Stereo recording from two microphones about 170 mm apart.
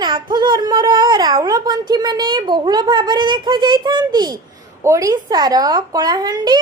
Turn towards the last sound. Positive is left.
turn(degrees=-25)  # may be behind; listen again after turning